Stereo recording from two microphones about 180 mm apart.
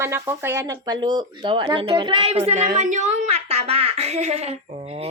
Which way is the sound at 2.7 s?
40° right (ahead or behind).